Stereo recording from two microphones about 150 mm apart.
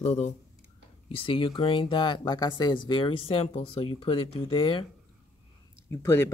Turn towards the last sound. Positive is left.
turn(degrees=20)  # may be behind; listen again after turning